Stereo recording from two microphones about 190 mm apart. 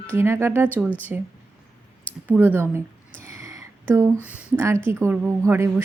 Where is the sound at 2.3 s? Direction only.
10° right (ahead or behind).